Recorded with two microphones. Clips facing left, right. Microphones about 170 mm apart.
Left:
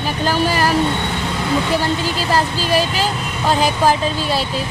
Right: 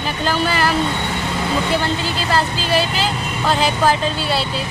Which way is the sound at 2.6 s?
45° left (ahead or behind).